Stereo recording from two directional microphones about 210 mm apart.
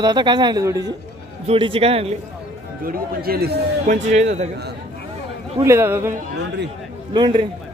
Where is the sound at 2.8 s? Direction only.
45° right (ahead or behind).